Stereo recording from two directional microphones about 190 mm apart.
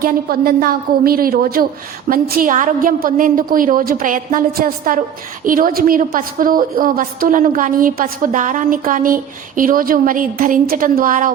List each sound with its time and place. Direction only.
0.0 s a woman's voice: 50° right (ahead or behind)